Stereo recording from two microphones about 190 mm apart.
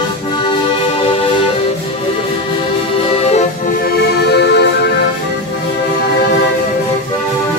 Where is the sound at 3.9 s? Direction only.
60° left (ahead or behind).